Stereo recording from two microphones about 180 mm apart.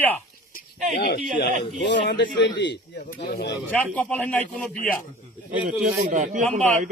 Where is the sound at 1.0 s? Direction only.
65° left (ahead or behind).